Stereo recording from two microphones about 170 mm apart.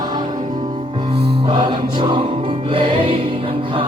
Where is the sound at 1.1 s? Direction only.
70° right (ahead or behind).